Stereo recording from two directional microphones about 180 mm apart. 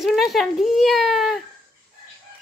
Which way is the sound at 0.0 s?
Centre (ahead or behind).